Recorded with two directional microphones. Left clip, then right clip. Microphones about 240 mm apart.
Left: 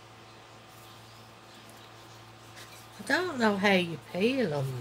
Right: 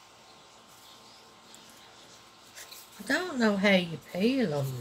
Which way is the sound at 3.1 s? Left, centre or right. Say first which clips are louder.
Left 1 dB; left.